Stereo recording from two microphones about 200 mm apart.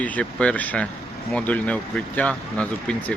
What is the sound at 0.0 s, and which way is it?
Speech, 5° left (ahead or behind).